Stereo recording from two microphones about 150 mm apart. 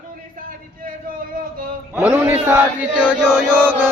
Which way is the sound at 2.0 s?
10° right (ahead or behind).